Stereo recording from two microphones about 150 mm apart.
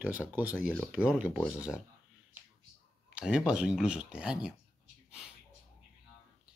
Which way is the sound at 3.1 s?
5° right (ahead or behind).